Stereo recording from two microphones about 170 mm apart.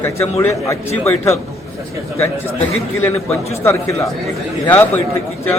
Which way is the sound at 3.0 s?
10° left (ahead or behind).